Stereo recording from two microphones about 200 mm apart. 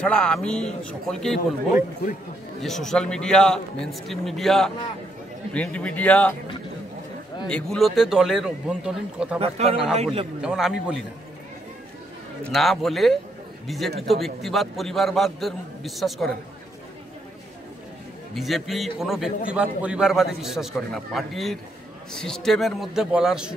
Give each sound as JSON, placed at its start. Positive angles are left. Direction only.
{"t": 0.0, "sound": "a man's voice", "side_deg": 5}
{"t": 2.6, "sound": "a man's voice", "side_deg": 0}
{"t": 7.4, "sound": "a man's voice", "side_deg": 5}
{"t": 9.4, "sound": "speech", "side_deg": -30}
{"t": 10.4, "sound": "a man's voice", "side_deg": 0}
{"t": 12.4, "sound": "a man's voice", "side_deg": 0}
{"t": 18.3, "sound": "a man's voice", "side_deg": 0}